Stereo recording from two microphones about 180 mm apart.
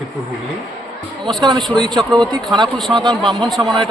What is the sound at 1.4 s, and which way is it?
Speech, 25° right (ahead or behind).